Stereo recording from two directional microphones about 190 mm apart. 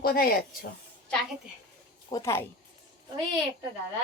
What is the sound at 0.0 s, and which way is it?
Speech, 50° left (ahead or behind).